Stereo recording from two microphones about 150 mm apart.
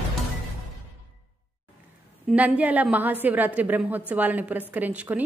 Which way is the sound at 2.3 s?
10° right (ahead or behind).